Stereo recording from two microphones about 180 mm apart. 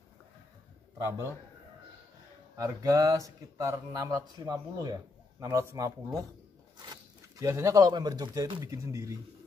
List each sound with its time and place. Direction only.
0.9 s a man's voice: 15° right (ahead or behind)
2.5 s speech: 15° right (ahead or behind)